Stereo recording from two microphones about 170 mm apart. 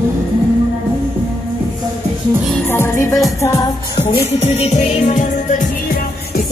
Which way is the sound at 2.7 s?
15° left (ahead or behind).